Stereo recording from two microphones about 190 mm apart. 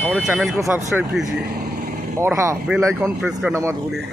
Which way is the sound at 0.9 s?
Centre (ahead or behind).